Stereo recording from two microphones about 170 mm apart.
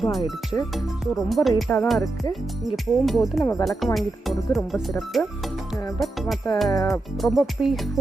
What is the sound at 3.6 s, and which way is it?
Speech, centre (ahead or behind).